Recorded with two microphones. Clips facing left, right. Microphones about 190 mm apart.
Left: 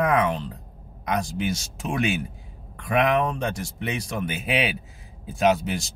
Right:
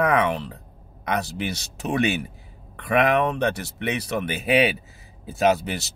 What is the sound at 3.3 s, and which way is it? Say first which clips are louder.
Speech: right 4 dB; 65° right (ahead or behind).